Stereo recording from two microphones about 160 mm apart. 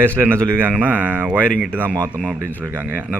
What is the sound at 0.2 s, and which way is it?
Speech, 15° right (ahead or behind).